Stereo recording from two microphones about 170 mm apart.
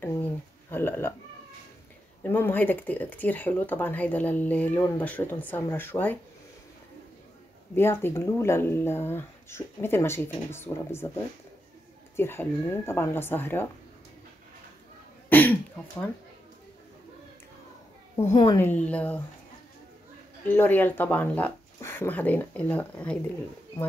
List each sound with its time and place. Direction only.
0.0 s a sound: 10° left (ahead or behind)
2.2 s speech: 10° left (ahead or behind)
7.7 s speech: 15° left (ahead or behind)
12.2 s speech: 15° left (ahead or behind)
15.2 s throat clearing: 10° left (ahead or behind)
18.3 s a woman's voice: 30° left (ahead or behind)
18.6 s speech: 10° left (ahead or behind)
20.5 s speech: 10° left (ahead or behind)